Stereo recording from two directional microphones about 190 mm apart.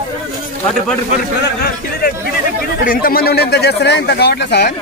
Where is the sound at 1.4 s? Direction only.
55° left (ahead or behind).